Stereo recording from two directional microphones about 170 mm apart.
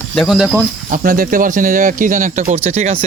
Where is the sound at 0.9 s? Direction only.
55° right (ahead or behind); by 3.0 s 40° right (ahead or behind).